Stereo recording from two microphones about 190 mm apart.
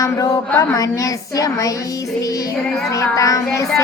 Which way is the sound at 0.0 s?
15° left (ahead or behind).